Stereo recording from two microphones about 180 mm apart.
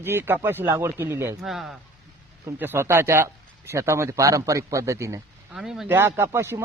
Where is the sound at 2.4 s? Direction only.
10° right (ahead or behind).